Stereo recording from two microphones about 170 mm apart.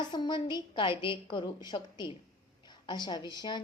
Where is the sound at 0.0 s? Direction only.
25° left (ahead or behind).